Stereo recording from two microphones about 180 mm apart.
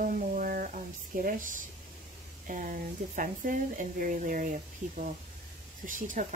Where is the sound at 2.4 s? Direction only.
50° right (ahead or behind).